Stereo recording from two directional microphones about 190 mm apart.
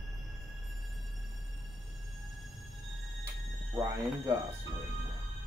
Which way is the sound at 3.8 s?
15° right (ahead or behind).